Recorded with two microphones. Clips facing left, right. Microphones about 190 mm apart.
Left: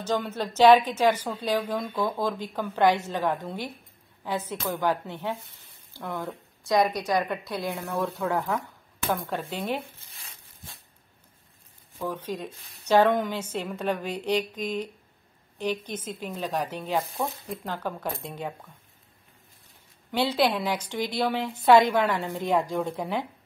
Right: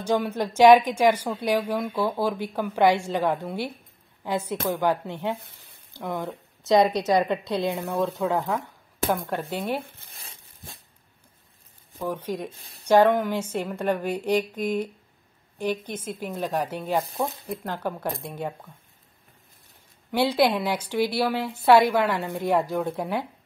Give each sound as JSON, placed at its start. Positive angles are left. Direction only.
{"t": 0.0, "sound": "a woman's voice", "side_deg": -10}
{"t": 12.0, "sound": "a woman's voice", "side_deg": -15}
{"t": 20.1, "sound": "a woman's voice", "side_deg": -10}